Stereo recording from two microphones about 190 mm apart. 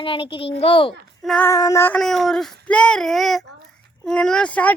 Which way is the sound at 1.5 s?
15° left (ahead or behind).